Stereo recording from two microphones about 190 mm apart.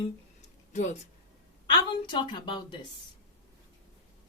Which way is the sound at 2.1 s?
25° left (ahead or behind).